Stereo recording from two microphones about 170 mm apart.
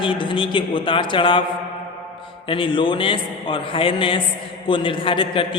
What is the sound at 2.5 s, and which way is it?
A man's voice, 30° left (ahead or behind).